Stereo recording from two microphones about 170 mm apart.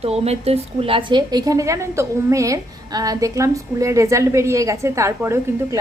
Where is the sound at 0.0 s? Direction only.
35° right (ahead or behind).